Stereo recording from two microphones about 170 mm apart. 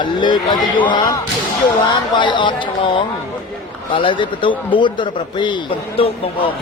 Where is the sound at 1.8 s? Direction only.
30° left (ahead or behind).